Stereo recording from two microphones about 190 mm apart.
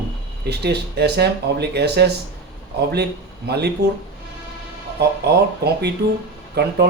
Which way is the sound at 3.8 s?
65° right (ahead or behind).